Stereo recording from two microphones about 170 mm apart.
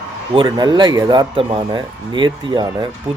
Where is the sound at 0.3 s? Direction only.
30° right (ahead or behind).